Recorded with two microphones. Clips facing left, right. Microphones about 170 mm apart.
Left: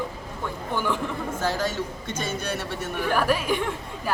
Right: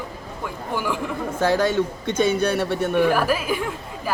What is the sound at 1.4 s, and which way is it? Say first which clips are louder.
A man's voice: right 9 dB; 65° right (ahead or behind).